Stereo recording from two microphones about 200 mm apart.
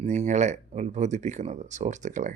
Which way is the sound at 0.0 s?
35° right (ahead or behind).